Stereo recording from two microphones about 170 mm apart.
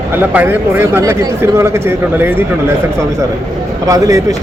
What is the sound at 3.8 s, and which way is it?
Speech, 20° right (ahead or behind).